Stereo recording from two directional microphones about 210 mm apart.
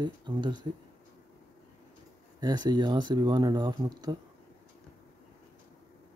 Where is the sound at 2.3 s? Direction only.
20° right (ahead or behind).